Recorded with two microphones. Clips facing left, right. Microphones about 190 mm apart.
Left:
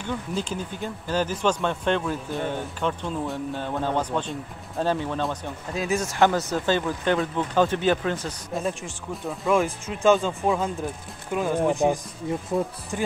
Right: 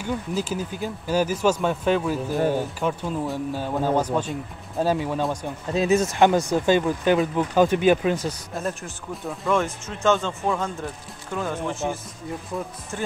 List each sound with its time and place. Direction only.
0.0 s speech: 5° right (ahead or behind)
5.8 s speech: 20° right (ahead or behind); by 9.6 s centre (ahead or behind)
9.6 s a man's voice: 15° left (ahead or behind)